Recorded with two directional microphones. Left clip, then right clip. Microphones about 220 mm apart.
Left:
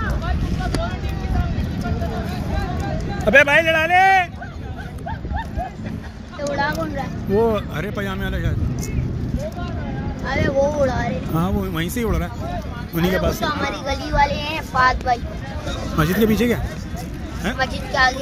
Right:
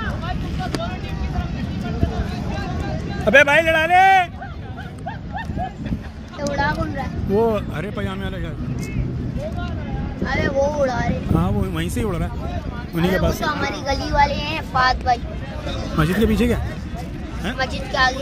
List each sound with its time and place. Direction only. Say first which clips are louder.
3.3 s speech: even; 20° right (ahead or behind)
6.5 s speech: even; 35° left (ahead or behind)
7.3 s speech: even; 10° right (ahead or behind)
10.2 s speech: left 1 dB; 30° left (ahead or behind)
11.3 s speech: left 1 dB; 5° right (ahead or behind)
13.4 s speech: even; 30° left (ahead or behind); by 15.1 s 15° left (ahead or behind)
15.9 s speech: left 1 dB; 5° right (ahead or behind)